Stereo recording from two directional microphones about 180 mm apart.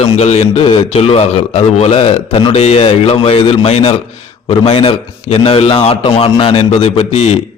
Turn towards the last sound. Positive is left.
turn(degrees=40)  # may be behind; listen again after turning